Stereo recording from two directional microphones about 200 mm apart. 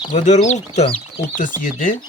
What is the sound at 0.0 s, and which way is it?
Speech, 35° left (ahead or behind).